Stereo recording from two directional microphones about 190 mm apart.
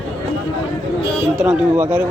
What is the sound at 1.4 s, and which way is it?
Speech, 5° right (ahead or behind).